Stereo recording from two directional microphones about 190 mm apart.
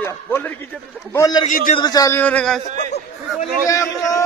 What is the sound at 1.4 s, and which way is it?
Speech, 45° left (ahead or behind).